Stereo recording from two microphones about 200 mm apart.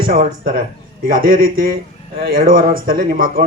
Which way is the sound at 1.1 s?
45° right (ahead or behind).